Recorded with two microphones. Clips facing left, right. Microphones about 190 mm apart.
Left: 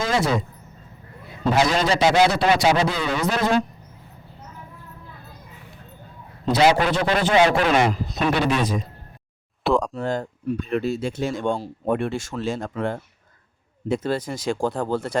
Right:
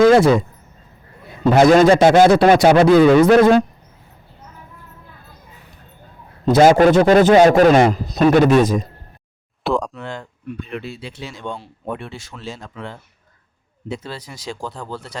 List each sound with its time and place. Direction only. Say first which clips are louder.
0.0 s speech: right 11 dB; 60° right (ahead or behind)
1.5 s a man's voice: right 10 dB; 50° right (ahead or behind)
6.4 s a man's voice: right 7 dB; 45° right (ahead or behind)
9.6 s speech: even; centre (ahead or behind)
9.9 s speech: left 6 dB; 40° left (ahead or behind)